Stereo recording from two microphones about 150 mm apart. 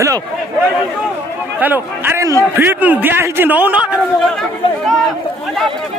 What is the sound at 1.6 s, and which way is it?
A man's voice, 15° right (ahead or behind).